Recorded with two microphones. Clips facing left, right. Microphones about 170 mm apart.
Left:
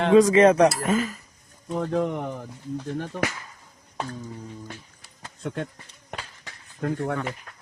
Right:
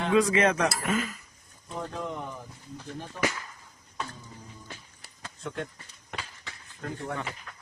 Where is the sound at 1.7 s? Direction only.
65° left (ahead or behind).